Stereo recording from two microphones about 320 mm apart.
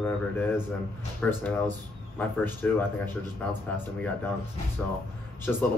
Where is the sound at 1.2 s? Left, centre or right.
Centre.